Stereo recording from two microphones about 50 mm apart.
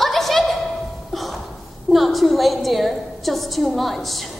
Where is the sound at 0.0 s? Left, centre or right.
Centre.